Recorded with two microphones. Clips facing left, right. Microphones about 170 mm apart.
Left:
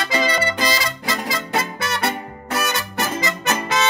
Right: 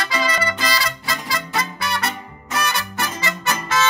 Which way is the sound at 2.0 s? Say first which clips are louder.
Left 3 dB; 60° left (ahead or behind).